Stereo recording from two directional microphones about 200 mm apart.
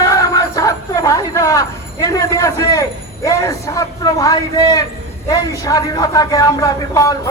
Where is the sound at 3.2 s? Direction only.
15° left (ahead or behind).